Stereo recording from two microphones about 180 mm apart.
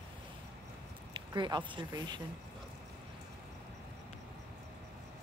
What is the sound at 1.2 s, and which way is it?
Speech, 25° right (ahead or behind).